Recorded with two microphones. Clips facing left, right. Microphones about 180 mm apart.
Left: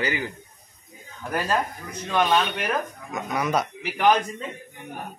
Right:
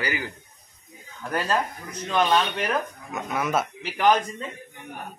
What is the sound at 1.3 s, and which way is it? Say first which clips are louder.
Speech: even; 10° left (ahead or behind).